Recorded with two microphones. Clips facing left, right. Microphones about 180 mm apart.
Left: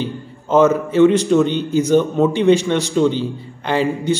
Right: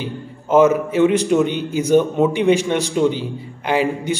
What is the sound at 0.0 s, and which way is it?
A man's voice, 10° right (ahead or behind).